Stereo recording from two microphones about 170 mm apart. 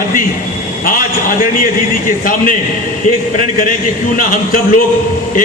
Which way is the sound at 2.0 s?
55° left (ahead or behind).